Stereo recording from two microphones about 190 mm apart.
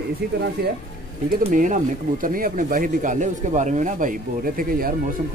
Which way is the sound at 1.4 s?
40° right (ahead or behind).